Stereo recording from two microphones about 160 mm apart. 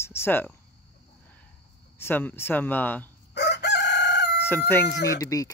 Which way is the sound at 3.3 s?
90° left.